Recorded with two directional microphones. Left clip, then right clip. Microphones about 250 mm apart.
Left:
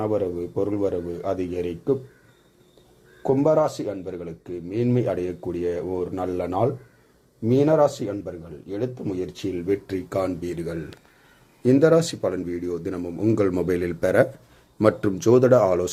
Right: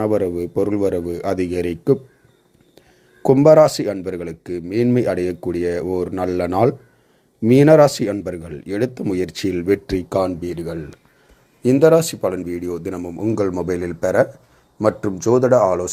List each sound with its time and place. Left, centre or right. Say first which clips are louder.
0.0 s speech: right 5 dB; right
3.2 s a man's voice: right 9 dB; right; by 15.9 s centre